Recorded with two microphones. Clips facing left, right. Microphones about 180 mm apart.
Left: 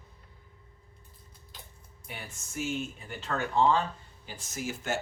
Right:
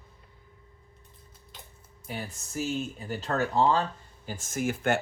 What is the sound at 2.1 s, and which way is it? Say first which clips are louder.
Speech: right 7 dB; 35° right (ahead or behind).